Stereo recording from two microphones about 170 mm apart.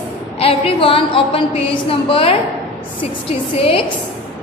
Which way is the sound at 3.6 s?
35° left (ahead or behind).